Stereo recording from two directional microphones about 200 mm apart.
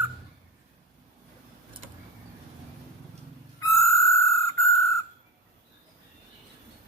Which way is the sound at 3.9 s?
15° left (ahead or behind).